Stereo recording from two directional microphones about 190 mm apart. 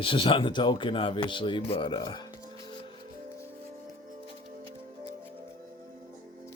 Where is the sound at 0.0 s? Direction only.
25° left (ahead or behind).